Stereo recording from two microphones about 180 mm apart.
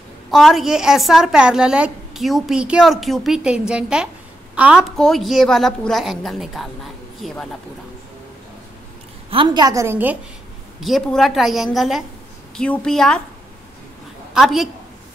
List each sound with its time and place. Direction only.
0.3 s a woman's voice: centre (ahead or behind)
9.3 s a woman's voice: 25° right (ahead or behind)
10.8 s a woman's voice: centre (ahead or behind)
14.3 s a woman's voice: centre (ahead or behind)